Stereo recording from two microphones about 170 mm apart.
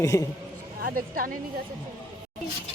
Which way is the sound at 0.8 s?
55° right (ahead or behind).